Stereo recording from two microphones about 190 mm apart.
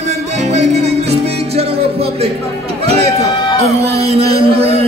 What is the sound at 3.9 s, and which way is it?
Speech, 30° right (ahead or behind).